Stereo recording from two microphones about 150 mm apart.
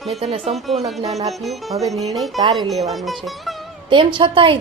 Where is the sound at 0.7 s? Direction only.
Centre (ahead or behind).